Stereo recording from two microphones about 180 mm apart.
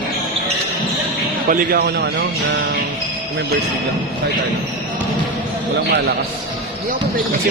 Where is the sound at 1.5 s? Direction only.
55° right (ahead or behind).